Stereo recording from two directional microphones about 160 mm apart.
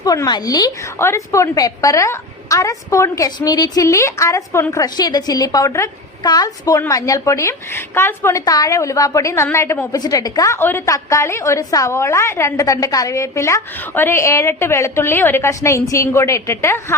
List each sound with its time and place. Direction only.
0.0 s a woman's voice: 25° left (ahead or behind)